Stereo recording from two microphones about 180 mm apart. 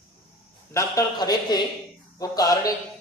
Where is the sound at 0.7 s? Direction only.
15° left (ahead or behind).